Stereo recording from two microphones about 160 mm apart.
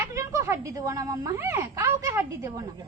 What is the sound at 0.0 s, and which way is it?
Speech, 20° right (ahead or behind).